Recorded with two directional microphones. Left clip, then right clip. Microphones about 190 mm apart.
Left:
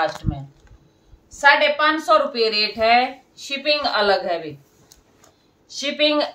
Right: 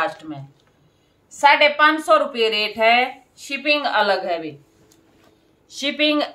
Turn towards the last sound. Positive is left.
turn(degrees=-5)  # may be behind; listen again after turning